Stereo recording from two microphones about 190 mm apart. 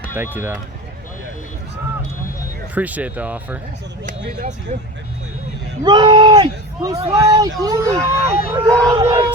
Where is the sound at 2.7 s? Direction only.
10° right (ahead or behind).